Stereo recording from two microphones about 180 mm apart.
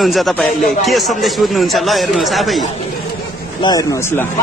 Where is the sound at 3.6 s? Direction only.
20° left (ahead or behind).